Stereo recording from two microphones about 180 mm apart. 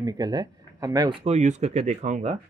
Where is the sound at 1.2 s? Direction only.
40° right (ahead or behind).